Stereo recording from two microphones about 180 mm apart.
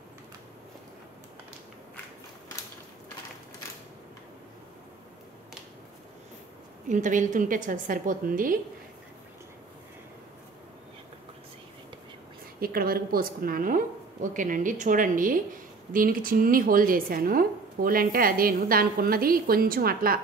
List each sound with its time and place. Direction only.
6.9 s a woman's voice: 45° right (ahead or behind)
12.5 s a woman's voice: 55° right (ahead or behind)